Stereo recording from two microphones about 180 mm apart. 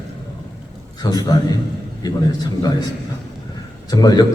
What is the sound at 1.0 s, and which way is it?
Speech, 20° left (ahead or behind).